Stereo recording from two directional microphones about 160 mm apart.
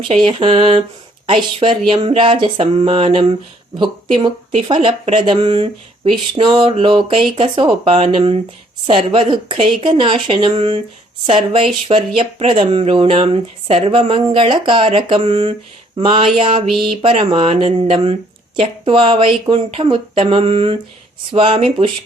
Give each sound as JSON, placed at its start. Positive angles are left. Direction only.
{"t": 0.3, "sound": "speech", "side_deg": -35}
{"t": 16.7, "sound": "a sound", "side_deg": 0}
{"t": 17.0, "sound": "speech", "side_deg": -35}